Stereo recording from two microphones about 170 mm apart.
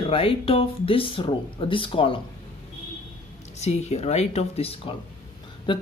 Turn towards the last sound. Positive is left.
turn(degrees=30)  # may be behind; listen again after turning